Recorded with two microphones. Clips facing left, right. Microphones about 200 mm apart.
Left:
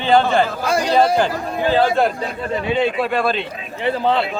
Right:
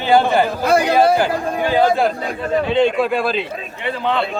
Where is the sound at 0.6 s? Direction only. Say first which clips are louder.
Right 4 dB; 60° right (ahead or behind).